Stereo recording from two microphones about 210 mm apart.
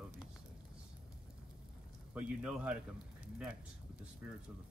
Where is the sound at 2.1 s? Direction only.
5° right (ahead or behind).